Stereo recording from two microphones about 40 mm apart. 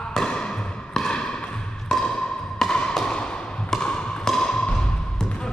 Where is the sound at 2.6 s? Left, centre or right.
Centre.